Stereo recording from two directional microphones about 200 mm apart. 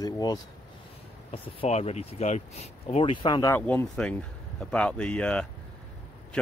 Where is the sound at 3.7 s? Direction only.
5° left (ahead or behind).